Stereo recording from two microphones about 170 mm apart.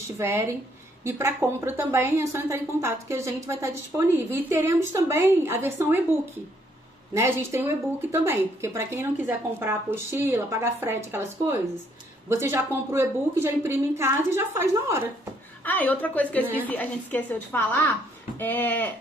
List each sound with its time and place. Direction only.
0.2 s a woman's voice: 15° right (ahead or behind)
7.2 s a woman's voice: 15° right (ahead or behind)
12.3 s a woman's voice: 15° right (ahead or behind)
15.6 s a woman's voice: 10° left (ahead or behind)